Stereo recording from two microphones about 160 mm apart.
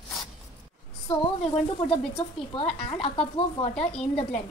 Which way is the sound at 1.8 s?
40° left (ahead or behind).